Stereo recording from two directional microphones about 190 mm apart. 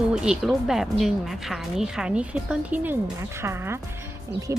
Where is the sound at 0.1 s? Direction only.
5° right (ahead or behind).